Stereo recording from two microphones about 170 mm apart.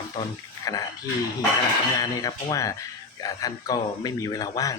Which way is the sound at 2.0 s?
20° left (ahead or behind).